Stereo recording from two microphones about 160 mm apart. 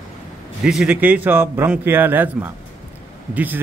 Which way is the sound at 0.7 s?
5° right (ahead or behind).